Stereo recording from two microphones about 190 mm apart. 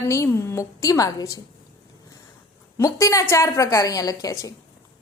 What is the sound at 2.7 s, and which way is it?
A man's voice, 15° left (ahead or behind).